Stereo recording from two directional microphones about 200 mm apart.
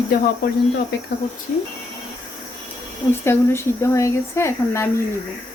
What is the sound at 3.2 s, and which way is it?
Speech, 10° left (ahead or behind).